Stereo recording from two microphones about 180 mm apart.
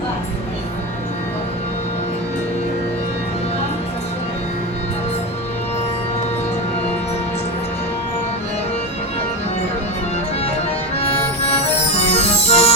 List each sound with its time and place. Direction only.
12.1 s music: 35° left (ahead or behind)